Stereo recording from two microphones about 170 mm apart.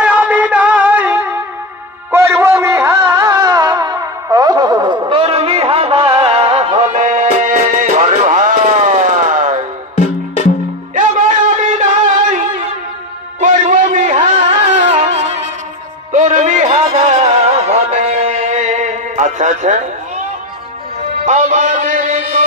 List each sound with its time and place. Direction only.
0.0 s music: 5° right (ahead or behind); by 9.6 s 45° right (ahead or behind)
9.9 s music: 45° left (ahead or behind)
11.0 s a sound: 50° right (ahead or behind)
13.4 s music: 50° right (ahead or behind)
21.3 s music: 45° right (ahead or behind)